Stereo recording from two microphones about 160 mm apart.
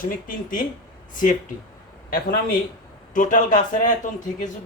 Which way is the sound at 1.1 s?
55° left (ahead or behind).